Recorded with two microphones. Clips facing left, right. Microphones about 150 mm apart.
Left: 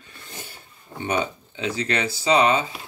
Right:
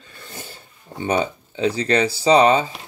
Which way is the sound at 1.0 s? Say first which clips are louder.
Right 4 dB; 30° right (ahead or behind).